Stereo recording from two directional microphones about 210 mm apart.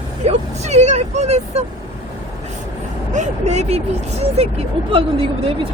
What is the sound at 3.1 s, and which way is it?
Speech, 35° right (ahead or behind).